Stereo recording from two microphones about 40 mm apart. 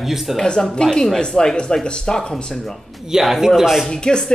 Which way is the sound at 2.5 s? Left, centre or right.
Centre.